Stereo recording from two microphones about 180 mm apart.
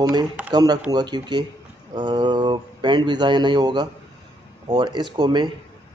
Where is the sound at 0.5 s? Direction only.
25° right (ahead or behind).